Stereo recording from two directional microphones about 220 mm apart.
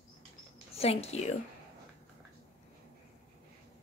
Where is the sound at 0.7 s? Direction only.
30° left (ahead or behind).